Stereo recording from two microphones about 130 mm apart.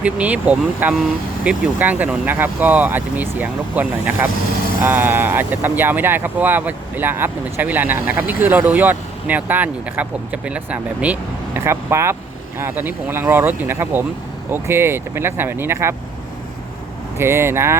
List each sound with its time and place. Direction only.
0.0 s speech: 10° right (ahead or behind)
17.2 s speech: 20° right (ahead or behind)